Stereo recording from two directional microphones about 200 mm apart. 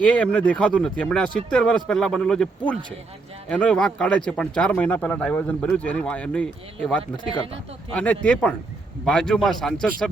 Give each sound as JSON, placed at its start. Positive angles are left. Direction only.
{"t": 0.0, "sound": "speech", "side_deg": 5}
{"t": 7.9, "sound": "speech", "side_deg": 5}